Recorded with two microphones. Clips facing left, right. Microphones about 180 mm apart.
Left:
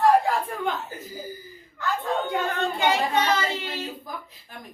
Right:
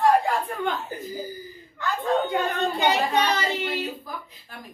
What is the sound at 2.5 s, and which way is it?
Speech, 15° right (ahead or behind).